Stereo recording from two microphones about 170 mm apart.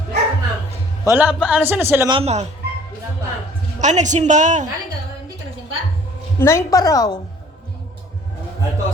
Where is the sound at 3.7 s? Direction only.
45° right (ahead or behind).